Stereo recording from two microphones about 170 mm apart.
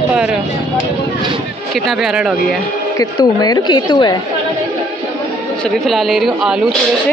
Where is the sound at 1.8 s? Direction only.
5° right (ahead or behind).